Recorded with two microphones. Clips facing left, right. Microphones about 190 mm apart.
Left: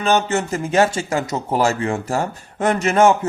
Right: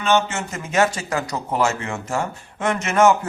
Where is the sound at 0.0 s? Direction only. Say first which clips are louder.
Left 2 dB; 35° left (ahead or behind).